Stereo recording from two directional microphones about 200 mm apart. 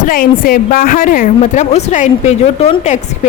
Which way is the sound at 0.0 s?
45° left (ahead or behind).